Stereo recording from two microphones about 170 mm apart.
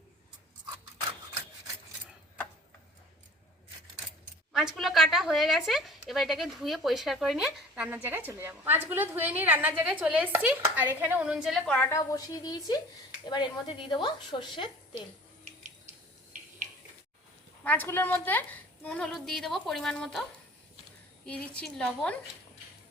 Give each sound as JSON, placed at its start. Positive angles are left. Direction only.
{"t": 4.5, "sound": "a woman's voice", "side_deg": 0}
{"t": 17.6, "sound": "a woman's voice", "side_deg": 10}
{"t": 21.2, "sound": "a woman's voice", "side_deg": 5}